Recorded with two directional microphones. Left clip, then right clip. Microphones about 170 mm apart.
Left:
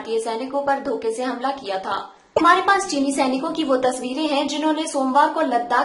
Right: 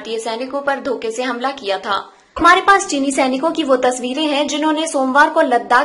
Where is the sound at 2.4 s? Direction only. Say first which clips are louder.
Right 6 dB; 30° right (ahead or behind).